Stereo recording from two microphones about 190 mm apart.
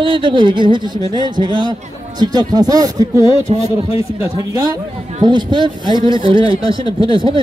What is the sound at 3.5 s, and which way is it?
Speech, 30° right (ahead or behind).